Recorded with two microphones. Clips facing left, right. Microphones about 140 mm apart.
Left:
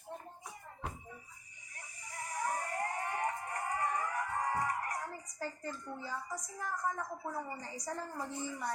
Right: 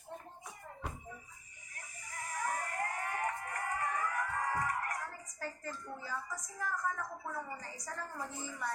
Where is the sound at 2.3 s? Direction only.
25° left (ahead or behind).